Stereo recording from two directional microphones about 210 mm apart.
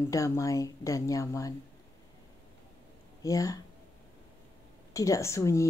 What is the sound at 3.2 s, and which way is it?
Speech, 15° left (ahead or behind).